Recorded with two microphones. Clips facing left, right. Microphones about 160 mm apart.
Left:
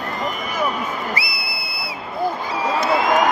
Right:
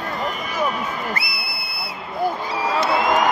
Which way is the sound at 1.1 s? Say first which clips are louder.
Left 2 dB; 55° right (ahead or behind).